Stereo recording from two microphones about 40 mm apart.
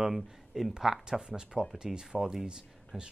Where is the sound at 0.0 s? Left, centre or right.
Centre.